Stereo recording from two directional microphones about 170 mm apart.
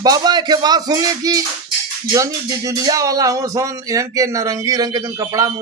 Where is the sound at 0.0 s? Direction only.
25° right (ahead or behind).